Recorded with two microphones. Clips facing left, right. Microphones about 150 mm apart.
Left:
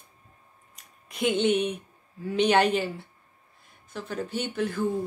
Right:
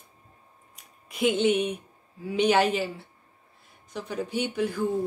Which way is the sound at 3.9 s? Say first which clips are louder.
Right 1 dB; 15° right (ahead or behind).